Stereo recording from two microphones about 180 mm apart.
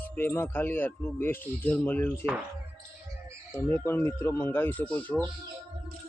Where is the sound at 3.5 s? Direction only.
10° left (ahead or behind).